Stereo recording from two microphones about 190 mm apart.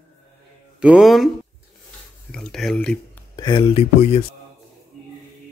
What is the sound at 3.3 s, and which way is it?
Speech, 25° left (ahead or behind).